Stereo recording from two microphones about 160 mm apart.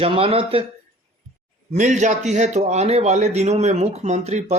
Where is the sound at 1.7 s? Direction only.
50° right (ahead or behind).